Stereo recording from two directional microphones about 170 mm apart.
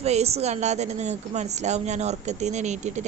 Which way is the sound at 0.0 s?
40° right (ahead or behind).